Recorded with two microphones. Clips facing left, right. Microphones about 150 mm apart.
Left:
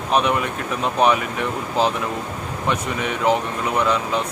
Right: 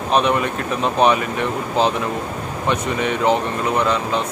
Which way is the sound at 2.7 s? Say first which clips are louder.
Right 4 dB; 5° left (ahead or behind).